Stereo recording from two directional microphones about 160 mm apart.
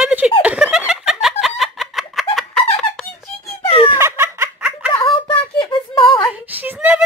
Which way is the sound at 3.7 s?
35° left (ahead or behind).